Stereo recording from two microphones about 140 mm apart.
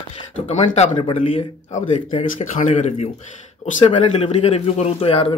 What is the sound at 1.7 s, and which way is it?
A man's voice, 50° left (ahead or behind).